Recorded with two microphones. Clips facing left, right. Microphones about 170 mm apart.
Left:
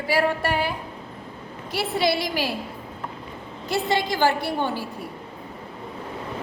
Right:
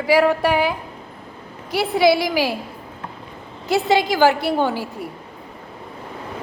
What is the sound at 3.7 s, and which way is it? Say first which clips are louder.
Speech: right 6 dB; 80° right.